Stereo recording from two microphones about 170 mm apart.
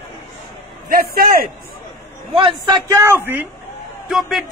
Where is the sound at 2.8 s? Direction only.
15° right (ahead or behind).